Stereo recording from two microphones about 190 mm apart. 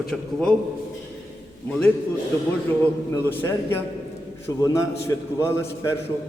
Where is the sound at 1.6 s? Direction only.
5° left (ahead or behind).